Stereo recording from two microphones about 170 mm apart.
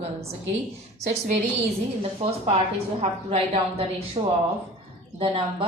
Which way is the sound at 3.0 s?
40° right (ahead or behind).